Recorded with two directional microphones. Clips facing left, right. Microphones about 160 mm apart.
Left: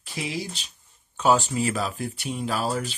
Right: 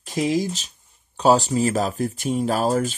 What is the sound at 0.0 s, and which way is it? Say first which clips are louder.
Speech: right 10 dB; 40° right (ahead or behind).